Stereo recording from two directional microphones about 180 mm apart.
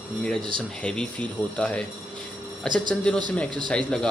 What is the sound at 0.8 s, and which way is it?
Speech, 5° left (ahead or behind).